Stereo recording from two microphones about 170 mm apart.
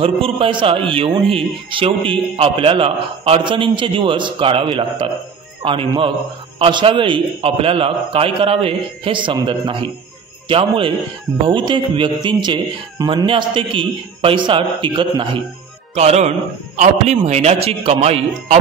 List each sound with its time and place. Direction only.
0.0 s a man's voice: 30° right (ahead or behind)
15.9 s a man's voice: 40° right (ahead or behind)